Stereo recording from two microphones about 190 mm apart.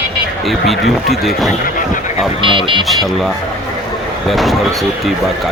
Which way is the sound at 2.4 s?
25° right (ahead or behind).